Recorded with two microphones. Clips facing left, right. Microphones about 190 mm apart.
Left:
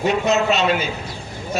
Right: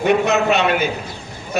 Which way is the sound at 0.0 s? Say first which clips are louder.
Right 2 dB; 60° right (ahead or behind).